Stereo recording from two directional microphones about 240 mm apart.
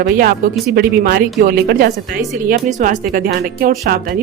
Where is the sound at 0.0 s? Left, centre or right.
Right.